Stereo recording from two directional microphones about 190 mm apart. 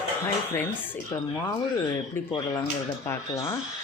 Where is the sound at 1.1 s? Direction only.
20° left (ahead or behind).